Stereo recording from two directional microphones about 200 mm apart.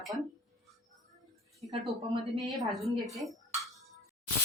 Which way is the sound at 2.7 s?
Centre (ahead or behind).